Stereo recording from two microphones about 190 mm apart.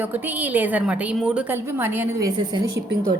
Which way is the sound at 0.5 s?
10° right (ahead or behind).